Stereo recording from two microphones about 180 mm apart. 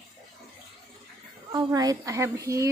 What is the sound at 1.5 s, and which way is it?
A woman's voice, 20° right (ahead or behind).